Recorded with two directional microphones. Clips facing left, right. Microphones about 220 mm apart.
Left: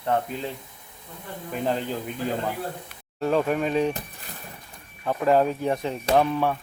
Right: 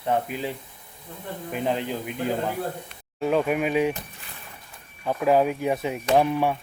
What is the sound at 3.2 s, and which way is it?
Speech, 5° right (ahead or behind).